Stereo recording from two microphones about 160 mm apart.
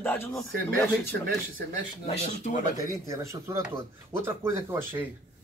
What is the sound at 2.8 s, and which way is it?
Speech, 20° right (ahead or behind).